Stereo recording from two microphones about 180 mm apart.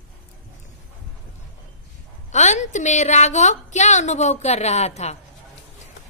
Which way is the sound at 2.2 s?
40° left (ahead or behind).